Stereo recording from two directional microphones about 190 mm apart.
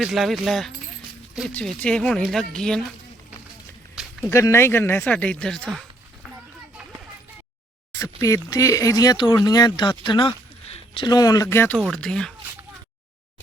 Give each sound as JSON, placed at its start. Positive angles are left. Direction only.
{"t": 0.0, "sound": "speech", "side_deg": 0}
{"t": 4.3, "sound": "speech", "side_deg": 15}
{"t": 7.9, "sound": "a sound", "side_deg": 15}
{"t": 8.4, "sound": "speech", "side_deg": 15}